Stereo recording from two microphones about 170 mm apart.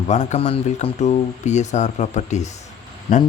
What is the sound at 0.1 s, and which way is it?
A man's voice, 40° left (ahead or behind).